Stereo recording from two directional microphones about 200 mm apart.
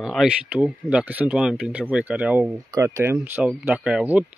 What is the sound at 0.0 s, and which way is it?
Speech, centre (ahead or behind).